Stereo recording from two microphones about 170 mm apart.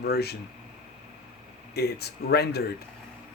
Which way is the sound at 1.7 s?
70° left (ahead or behind).